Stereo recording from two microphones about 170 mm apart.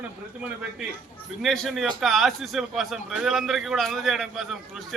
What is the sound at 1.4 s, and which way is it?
A man's voice, centre (ahead or behind).